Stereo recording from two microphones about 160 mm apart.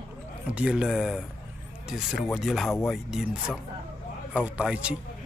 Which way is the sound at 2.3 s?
Centre (ahead or behind).